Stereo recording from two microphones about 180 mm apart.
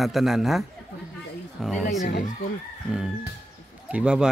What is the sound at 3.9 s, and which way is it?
Speech, 5° right (ahead or behind).